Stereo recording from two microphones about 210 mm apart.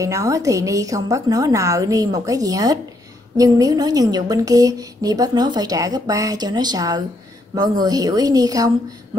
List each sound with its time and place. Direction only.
0.0 s a woman's voice: 15° right (ahead or behind)